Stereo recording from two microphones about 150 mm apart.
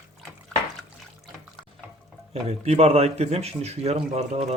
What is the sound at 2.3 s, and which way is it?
Speech, 45° right (ahead or behind).